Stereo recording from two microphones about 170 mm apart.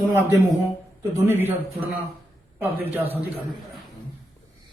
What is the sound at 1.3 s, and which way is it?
Speech, 10° right (ahead or behind).